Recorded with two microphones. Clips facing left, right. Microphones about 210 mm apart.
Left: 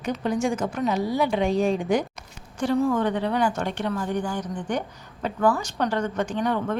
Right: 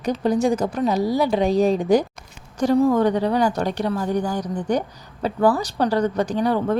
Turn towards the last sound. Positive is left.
turn(degrees=-35)  # may be behind; listen again after turning